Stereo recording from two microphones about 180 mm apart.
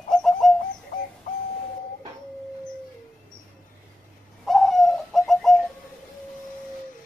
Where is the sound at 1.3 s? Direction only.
45° left (ahead or behind).